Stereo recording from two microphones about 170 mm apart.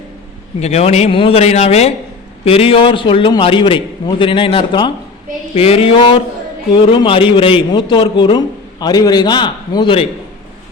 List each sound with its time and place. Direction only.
0.6 s a man's voice: 40° left (ahead or behind)